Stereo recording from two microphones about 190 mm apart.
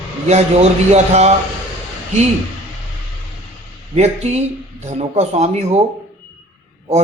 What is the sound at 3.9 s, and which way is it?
Speech, 35° right (ahead or behind).